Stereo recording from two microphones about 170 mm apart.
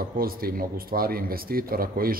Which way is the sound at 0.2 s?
60° right (ahead or behind).